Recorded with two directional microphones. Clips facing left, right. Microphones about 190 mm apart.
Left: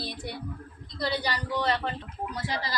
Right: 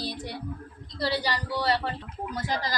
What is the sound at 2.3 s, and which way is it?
Speech, 40° right (ahead or behind).